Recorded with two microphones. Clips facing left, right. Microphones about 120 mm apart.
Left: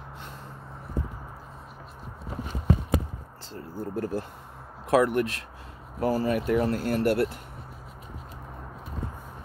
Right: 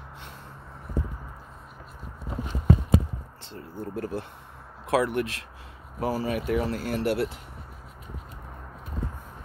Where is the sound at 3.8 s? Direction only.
40° left (ahead or behind).